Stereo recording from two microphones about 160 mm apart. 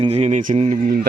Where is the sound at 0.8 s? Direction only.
60° right (ahead or behind).